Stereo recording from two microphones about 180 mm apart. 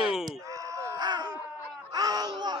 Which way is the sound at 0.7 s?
20° right (ahead or behind).